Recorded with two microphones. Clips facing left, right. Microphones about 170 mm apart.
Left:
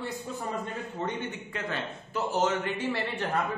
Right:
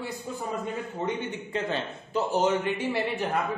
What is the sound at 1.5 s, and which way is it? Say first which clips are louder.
A man's voice: right 4 dB; 20° right (ahead or behind).